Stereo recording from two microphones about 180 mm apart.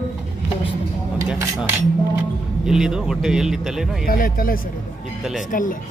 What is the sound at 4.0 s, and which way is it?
Speech, 55° left (ahead or behind).